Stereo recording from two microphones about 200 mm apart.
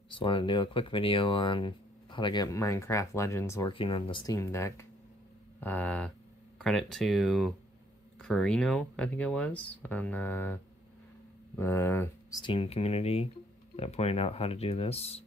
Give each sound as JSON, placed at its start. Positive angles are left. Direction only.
{"t": 0.1, "sound": "speech", "side_deg": 25}
{"t": 3.7, "sound": "speech", "side_deg": 25}